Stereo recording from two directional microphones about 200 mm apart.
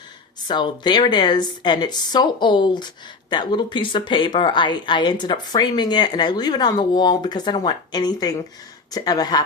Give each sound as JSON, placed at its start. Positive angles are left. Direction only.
{"t": 0.4, "sound": "a woman's voice", "side_deg": 20}